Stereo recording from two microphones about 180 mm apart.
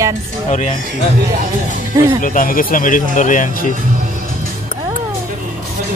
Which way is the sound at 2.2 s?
50° left (ahead or behind).